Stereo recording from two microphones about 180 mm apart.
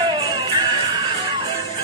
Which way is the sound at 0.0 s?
20° right (ahead or behind).